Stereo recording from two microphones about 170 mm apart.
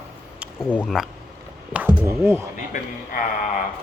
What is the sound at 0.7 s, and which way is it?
Speech, 10° left (ahead or behind).